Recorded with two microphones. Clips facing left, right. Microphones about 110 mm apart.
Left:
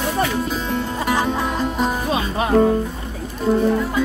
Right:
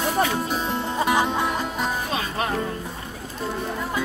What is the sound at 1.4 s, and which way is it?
Music, centre (ahead or behind).